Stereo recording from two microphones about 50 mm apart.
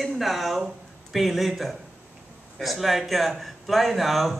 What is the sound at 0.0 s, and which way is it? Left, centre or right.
Speech, centre.